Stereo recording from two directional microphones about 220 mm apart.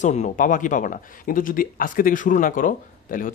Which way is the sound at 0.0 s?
30° left (ahead or behind).